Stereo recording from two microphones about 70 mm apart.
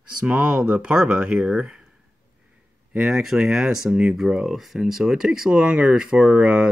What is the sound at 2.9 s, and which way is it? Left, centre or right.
Speech, centre.